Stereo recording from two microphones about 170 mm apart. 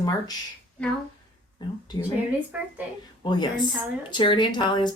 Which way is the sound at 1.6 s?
25° left (ahead or behind).